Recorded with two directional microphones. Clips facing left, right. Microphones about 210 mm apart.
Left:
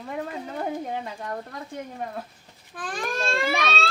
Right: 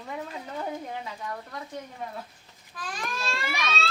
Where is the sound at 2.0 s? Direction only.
50° left (ahead or behind).